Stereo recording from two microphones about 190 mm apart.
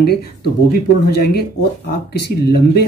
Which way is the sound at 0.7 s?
55° left (ahead or behind).